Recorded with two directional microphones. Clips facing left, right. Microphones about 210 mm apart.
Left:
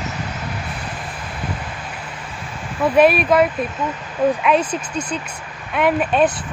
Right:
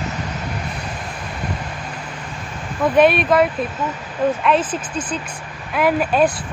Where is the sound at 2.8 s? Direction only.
5° left (ahead or behind).